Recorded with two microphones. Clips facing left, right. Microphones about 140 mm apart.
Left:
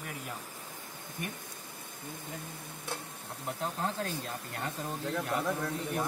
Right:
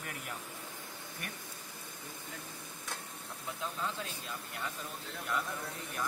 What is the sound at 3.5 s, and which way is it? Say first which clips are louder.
A man's voice: left 4 dB; 65° left (ahead or behind).